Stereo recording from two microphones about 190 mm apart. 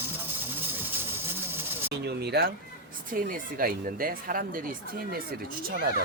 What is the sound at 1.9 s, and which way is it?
Speech, 60° right (ahead or behind).